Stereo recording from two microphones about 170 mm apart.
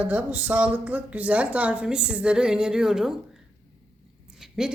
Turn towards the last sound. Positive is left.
turn(degrees=-5)  # may be behind; listen again after turning